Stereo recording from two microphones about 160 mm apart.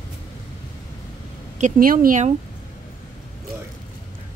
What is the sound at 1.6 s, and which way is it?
Speech, 55° right (ahead or behind).